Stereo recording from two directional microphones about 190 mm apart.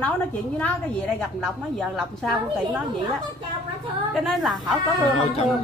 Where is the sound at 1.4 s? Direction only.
Centre (ahead or behind).